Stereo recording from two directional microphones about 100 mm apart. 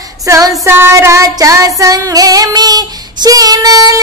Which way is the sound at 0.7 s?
25° right (ahead or behind).